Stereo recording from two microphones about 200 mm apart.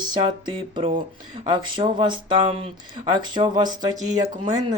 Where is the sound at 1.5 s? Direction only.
25° right (ahead or behind).